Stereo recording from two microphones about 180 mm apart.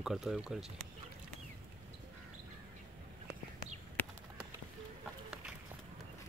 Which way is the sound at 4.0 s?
10° left (ahead or behind).